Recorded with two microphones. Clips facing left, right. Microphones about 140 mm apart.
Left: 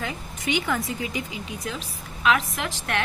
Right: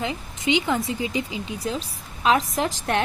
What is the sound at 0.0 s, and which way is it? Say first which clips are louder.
Speech: right 4 dB; 25° right (ahead or behind).